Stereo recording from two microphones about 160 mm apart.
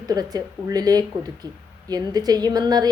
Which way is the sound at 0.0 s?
25° right (ahead or behind).